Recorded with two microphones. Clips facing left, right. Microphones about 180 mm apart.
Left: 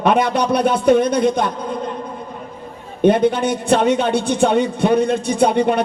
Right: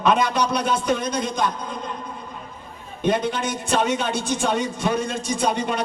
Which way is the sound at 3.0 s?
55° left (ahead or behind).